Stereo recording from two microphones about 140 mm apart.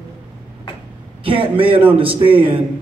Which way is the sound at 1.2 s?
40° right (ahead or behind).